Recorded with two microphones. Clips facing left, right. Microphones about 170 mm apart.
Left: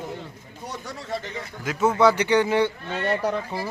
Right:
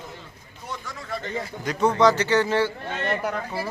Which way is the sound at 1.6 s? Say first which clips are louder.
Even; 5° left (ahead or behind).